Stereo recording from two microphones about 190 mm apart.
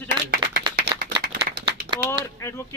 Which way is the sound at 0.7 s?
55° right (ahead or behind).